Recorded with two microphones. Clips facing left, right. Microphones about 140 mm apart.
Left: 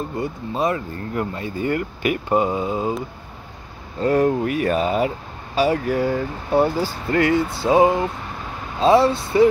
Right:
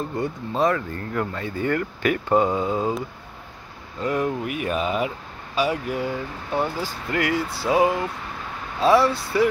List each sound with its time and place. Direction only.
0.2 s speech: 10° left (ahead or behind)
4.0 s speech: 35° left (ahead or behind)